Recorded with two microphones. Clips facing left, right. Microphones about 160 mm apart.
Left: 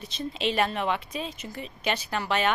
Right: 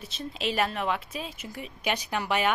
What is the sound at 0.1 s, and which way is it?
Speech, 5° right (ahead or behind).